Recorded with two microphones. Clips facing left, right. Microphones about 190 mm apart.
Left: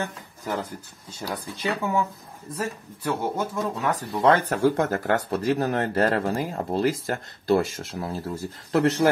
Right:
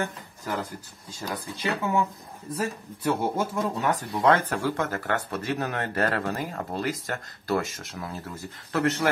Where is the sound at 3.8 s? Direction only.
5° left (ahead or behind).